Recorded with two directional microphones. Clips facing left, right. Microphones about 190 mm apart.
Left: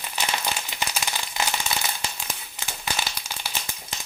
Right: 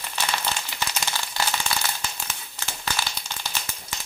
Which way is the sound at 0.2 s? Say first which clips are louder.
Even; 20° left (ahead or behind).